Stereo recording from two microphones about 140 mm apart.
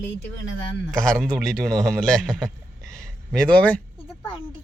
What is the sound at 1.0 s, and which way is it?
Speech, 5° left (ahead or behind).